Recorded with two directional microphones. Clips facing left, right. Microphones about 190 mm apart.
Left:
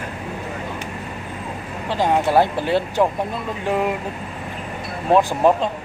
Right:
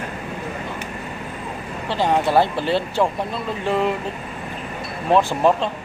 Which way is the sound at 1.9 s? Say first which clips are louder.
Left 1 dB; 10° left (ahead or behind).